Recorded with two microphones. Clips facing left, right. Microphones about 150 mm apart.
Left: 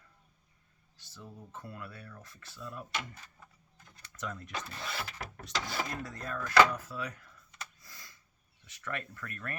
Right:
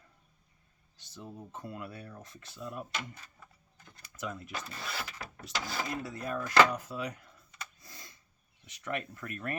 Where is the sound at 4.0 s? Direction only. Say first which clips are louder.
Right 1 dB; 10° right (ahead or behind).